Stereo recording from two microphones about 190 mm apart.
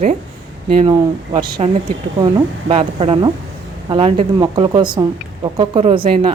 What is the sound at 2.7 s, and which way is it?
Speech, 30° right (ahead or behind).